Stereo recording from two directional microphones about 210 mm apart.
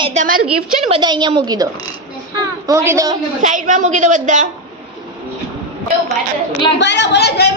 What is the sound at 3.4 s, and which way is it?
A woman's voice, 35° right (ahead or behind).